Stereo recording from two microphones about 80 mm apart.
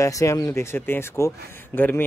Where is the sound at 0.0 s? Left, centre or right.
Left.